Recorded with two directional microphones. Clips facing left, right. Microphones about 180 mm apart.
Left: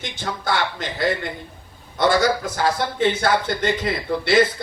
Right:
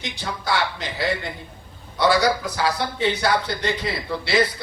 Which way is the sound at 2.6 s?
50° left (ahead or behind).